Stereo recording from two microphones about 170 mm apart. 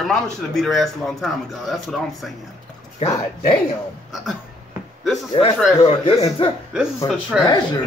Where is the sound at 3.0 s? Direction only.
40° left (ahead or behind).